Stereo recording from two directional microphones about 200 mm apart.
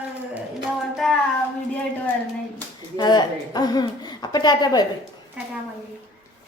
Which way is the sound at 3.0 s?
20° left (ahead or behind).